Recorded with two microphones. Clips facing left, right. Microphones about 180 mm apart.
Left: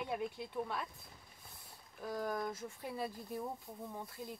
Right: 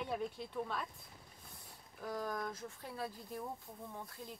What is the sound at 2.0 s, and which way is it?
Speech, 10° left (ahead or behind).